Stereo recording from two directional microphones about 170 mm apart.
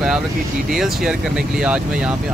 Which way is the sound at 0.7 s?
Centre (ahead or behind).